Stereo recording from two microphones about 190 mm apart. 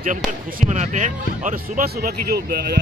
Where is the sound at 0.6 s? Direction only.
40° right (ahead or behind).